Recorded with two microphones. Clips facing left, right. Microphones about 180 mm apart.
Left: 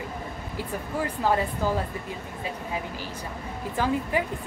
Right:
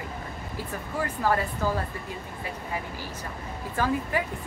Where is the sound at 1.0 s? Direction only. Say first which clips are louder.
Left 1 dB; 15° left (ahead or behind).